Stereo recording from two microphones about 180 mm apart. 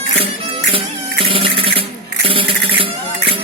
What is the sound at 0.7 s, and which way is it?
Music, 30° right (ahead or behind).